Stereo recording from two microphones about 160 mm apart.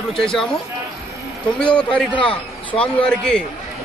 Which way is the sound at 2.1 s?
35° left (ahead or behind).